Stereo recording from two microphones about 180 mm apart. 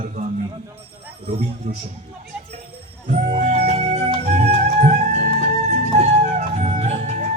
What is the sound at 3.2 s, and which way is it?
Music, 30° right (ahead or behind).